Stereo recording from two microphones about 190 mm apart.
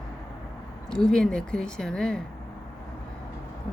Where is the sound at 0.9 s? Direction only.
5° left (ahead or behind).